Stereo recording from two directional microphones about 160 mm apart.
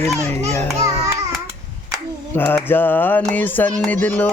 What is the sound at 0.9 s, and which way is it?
Music, 20° right (ahead or behind).